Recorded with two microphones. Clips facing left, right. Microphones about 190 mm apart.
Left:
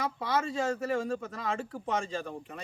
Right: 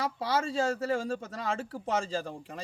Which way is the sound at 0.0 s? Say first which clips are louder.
Right 1 dB; 30° right (ahead or behind).